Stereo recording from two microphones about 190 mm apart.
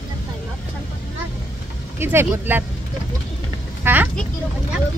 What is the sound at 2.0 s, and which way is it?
Speech, 10° right (ahead or behind).